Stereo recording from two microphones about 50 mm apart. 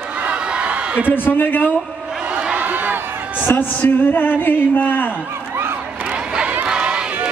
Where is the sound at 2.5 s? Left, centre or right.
Right.